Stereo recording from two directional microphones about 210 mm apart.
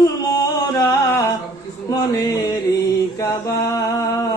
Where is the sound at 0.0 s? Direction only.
15° left (ahead or behind).